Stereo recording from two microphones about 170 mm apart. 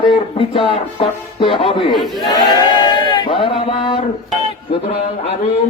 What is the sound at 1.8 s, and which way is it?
Speech, centre (ahead or behind).